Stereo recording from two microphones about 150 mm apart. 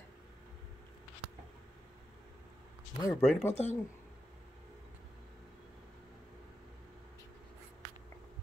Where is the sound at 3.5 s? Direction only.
45° left (ahead or behind).